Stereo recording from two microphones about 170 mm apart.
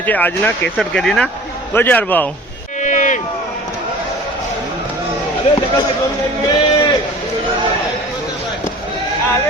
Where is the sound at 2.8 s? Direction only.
45° left (ahead or behind).